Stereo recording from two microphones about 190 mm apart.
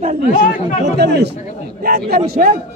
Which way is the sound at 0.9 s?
60° right (ahead or behind).